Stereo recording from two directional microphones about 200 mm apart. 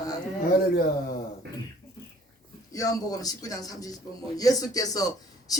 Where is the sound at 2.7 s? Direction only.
20° left (ahead or behind).